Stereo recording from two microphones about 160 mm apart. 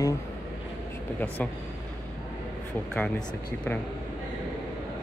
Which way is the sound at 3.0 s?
5° left (ahead or behind).